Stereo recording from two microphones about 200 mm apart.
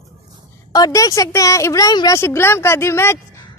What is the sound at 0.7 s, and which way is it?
A woman's voice, 20° left (ahead or behind).